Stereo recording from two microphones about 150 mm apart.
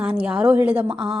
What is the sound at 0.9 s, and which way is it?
Speech, 35° right (ahead or behind).